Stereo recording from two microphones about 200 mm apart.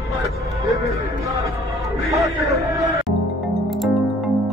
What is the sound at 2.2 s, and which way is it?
Music, 15° right (ahead or behind).